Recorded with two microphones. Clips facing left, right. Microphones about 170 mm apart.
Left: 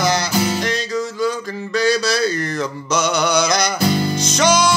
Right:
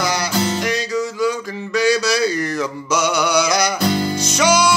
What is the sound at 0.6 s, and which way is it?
Music, 10° right (ahead or behind).